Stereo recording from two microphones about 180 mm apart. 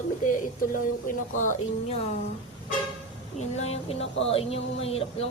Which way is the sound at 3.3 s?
35° left (ahead or behind).